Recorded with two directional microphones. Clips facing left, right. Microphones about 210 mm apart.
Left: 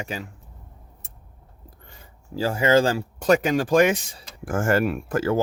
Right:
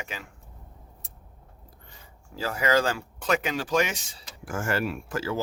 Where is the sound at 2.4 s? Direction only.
30° left (ahead or behind).